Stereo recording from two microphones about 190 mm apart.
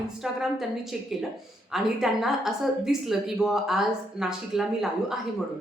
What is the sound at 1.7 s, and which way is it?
Speech, centre (ahead or behind).